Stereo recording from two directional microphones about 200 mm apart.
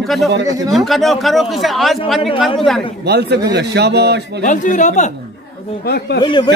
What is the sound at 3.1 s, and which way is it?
A man's voice, 55° right (ahead or behind).